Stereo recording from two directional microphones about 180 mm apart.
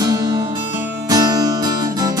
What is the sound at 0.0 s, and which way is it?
Music, 20° right (ahead or behind).